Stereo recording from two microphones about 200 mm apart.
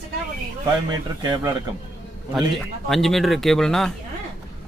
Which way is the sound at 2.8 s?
Centre (ahead or behind).